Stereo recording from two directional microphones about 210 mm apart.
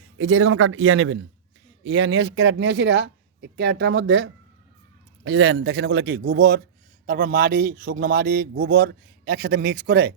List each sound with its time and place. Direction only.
0.2 s a man's voice: 70° right (ahead or behind); by 10.2 s 50° right (ahead or behind)